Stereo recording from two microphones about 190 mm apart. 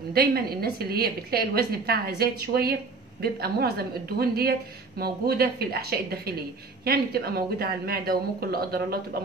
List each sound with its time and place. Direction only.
0.1 s a woman's voice: 55° right (ahead or behind)